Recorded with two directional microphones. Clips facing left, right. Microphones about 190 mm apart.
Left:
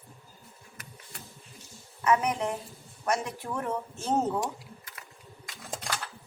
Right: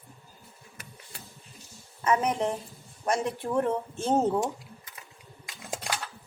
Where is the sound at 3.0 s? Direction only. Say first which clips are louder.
Right 2 dB; 30° right (ahead or behind).